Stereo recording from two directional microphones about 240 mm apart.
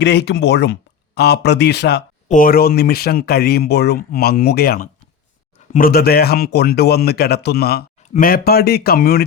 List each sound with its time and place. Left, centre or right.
0.0 s speech: left